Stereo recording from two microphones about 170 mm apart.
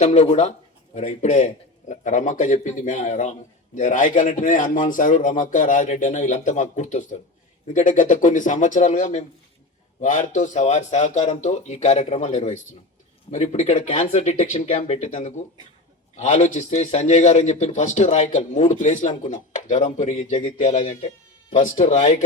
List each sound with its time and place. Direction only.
0.0 s a man's voice: 40° left (ahead or behind)